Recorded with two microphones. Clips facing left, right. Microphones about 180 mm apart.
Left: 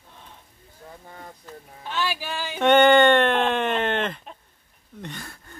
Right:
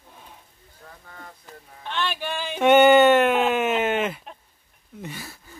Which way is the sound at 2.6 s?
5° right (ahead or behind).